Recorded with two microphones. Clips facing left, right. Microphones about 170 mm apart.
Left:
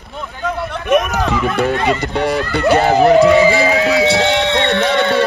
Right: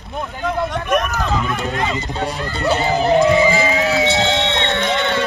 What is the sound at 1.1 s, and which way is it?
Speech, 70° left (ahead or behind).